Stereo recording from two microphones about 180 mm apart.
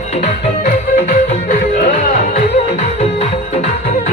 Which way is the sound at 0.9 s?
40° left (ahead or behind).